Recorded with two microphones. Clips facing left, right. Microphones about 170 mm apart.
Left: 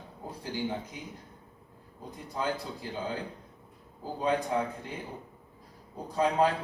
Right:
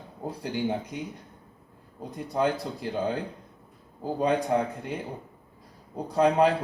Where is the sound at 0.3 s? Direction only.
75° right (ahead or behind).